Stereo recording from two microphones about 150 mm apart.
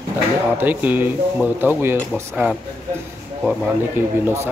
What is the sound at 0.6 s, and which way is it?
Speech, 10° right (ahead or behind).